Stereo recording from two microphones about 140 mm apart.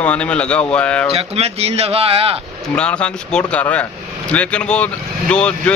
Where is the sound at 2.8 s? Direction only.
10° left (ahead or behind).